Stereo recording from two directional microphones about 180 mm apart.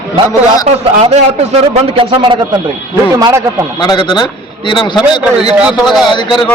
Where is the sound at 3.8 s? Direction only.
25° left (ahead or behind).